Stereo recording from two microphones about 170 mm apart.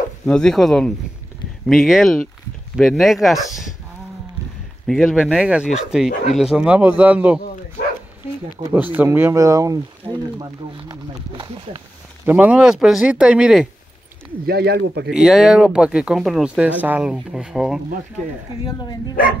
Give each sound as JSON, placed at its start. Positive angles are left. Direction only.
{"t": 0.3, "sound": "speech", "side_deg": 5}
{"t": 4.8, "sound": "speech", "side_deg": 0}
{"t": 8.7, "sound": "speech", "side_deg": -10}
{"t": 12.3, "sound": "speech", "side_deg": -10}
{"t": 14.4, "sound": "speech", "side_deg": -70}
{"t": 15.0, "sound": "speech", "side_deg": 0}
{"t": 18.6, "sound": "speech", "side_deg": 25}